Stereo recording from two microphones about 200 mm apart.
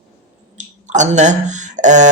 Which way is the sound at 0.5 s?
35° right (ahead or behind).